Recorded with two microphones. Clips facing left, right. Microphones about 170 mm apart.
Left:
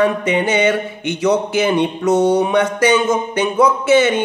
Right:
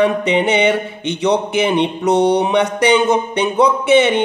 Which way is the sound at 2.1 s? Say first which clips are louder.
Even; 65° right (ahead or behind).